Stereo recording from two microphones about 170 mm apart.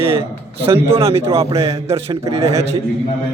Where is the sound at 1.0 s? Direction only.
35° right (ahead or behind).